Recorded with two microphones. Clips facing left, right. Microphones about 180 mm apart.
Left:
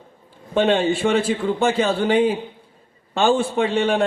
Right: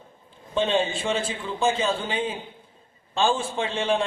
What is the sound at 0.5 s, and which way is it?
A man's voice, 70° left (ahead or behind).